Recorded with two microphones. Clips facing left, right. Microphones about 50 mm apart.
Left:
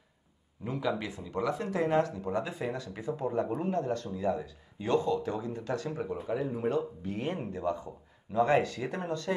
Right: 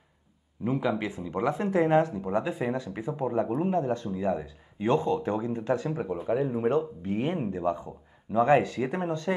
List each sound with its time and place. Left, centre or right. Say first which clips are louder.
0.7 s speech: right 5 dB; right